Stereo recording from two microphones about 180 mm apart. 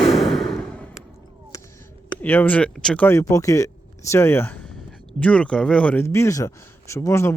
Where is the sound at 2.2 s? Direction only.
10° left (ahead or behind).